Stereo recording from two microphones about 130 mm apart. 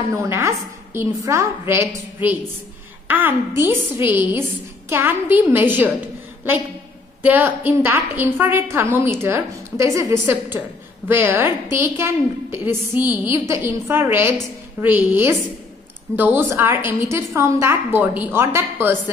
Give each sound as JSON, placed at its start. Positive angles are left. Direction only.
{"t": 0.1, "sound": "a woman's voice", "side_deg": -20}
{"t": 7.2, "sound": "a woman's voice", "side_deg": -15}